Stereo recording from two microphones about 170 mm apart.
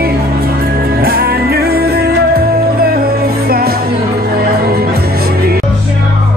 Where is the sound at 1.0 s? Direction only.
60° right (ahead or behind).